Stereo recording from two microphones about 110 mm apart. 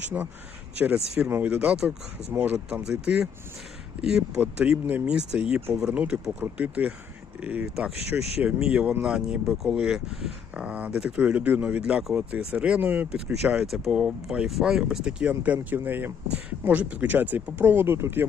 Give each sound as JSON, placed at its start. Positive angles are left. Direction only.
{"t": 0.1, "sound": "speech", "side_deg": -20}
{"t": 0.8, "sound": "speech", "side_deg": -10}